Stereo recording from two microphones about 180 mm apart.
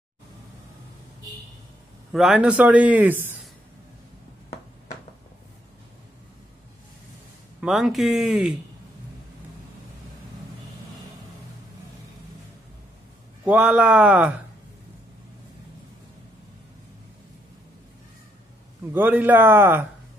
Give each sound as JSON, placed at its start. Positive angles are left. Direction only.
{"t": 2.1, "sound": "a man's voice", "side_deg": -5}
{"t": 7.6, "sound": "speech", "side_deg": 0}
{"t": 13.5, "sound": "speech", "side_deg": -5}
{"t": 18.9, "sound": "a man's voice", "side_deg": -10}